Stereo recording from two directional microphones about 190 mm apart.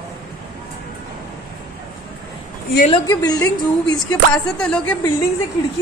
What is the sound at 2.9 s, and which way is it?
Speech, 20° left (ahead or behind).